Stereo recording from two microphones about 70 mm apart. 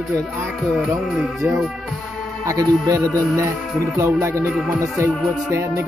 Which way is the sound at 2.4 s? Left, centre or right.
Right.